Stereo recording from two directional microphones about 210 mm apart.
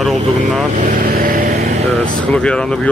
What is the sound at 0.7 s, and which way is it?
Vehicle, 40° right (ahead or behind).